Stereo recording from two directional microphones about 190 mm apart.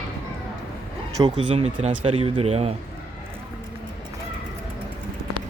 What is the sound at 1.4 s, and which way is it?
Speech, 30° right (ahead or behind).